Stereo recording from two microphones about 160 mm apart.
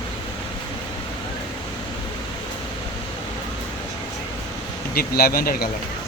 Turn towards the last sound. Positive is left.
turn(degrees=65)  # may be behind; listen again after turning